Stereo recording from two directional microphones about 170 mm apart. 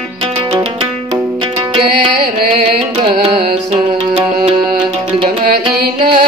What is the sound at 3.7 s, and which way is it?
Music, 35° right (ahead or behind).